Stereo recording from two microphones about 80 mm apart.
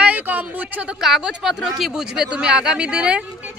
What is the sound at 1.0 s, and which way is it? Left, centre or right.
Speech, centre.